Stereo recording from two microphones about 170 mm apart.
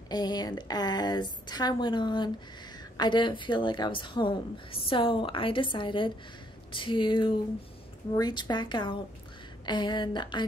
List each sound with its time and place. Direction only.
0.1 s a woman's voice: 25° left (ahead or behind)